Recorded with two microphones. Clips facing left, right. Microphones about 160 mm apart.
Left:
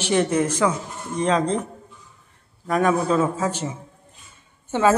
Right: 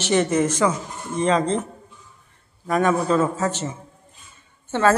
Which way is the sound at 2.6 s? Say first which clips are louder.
Even; centre (ahead or behind).